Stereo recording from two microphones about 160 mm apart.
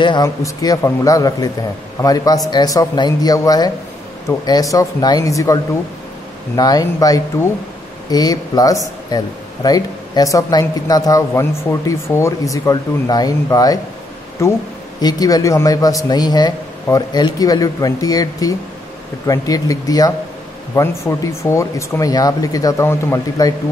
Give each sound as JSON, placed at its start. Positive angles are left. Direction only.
{"t": 0.0, "sound": "speech", "side_deg": 25}